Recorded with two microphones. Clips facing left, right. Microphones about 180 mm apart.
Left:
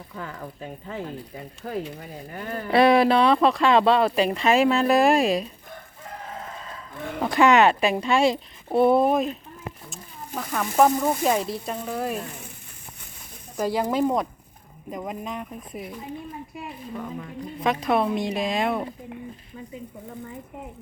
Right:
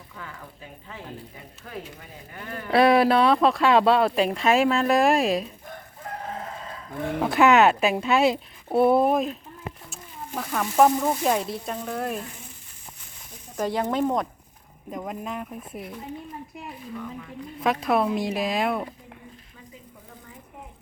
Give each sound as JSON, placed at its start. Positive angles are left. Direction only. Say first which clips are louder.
{"t": 0.2, "sound": "speech", "louder": "left 6 dB", "side_deg": 40}
{"t": 2.6, "sound": "speech", "louder": "left 1 dB", "side_deg": 0}
{"t": 7.2, "sound": "speech", "louder": "even", "side_deg": -5}
{"t": 13.6, "sound": "speech", "louder": "left 1 dB", "side_deg": 0}
{"t": 17.6, "sound": "speech", "louder": "even", "side_deg": -5}